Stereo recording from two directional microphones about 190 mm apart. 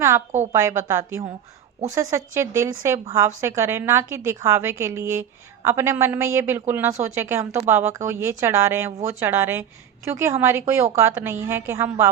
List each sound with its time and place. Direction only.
0.5 s a woman's voice: 15° right (ahead or behind)